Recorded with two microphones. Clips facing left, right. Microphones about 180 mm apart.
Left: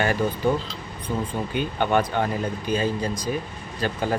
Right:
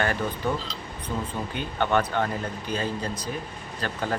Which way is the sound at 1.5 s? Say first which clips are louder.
Left 2 dB; 15° left (ahead or behind).